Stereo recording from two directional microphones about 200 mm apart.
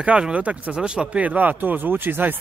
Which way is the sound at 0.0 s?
5° right (ahead or behind).